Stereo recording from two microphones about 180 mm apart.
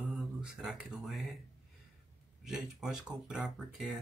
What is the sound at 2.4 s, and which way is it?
Speech, centre (ahead or behind).